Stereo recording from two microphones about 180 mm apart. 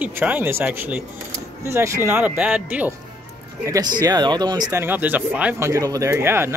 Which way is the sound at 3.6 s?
20° right (ahead or behind).